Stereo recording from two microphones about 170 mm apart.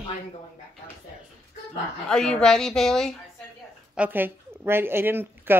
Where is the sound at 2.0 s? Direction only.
5° left (ahead or behind).